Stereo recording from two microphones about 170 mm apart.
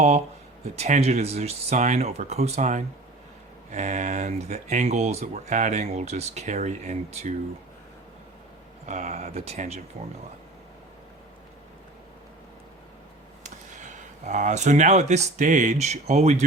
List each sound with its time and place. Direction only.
0.8 s speech: 40° right (ahead or behind)
8.9 s speech: 40° right (ahead or behind)
13.4 s speech: 45° right (ahead or behind)